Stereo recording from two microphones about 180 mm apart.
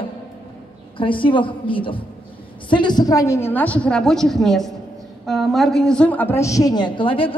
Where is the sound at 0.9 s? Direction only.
30° left (ahead or behind).